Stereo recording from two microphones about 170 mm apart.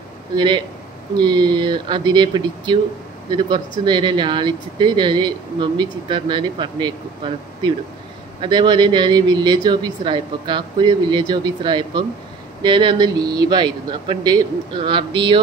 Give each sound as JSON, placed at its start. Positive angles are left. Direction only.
{"t": 1.1, "sound": "speech", "side_deg": -25}